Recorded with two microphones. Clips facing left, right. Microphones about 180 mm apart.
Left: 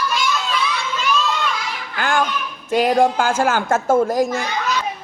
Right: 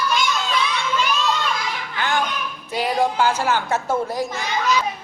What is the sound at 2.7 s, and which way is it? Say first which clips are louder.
A woman's voice: left 6 dB; 50° left (ahead or behind).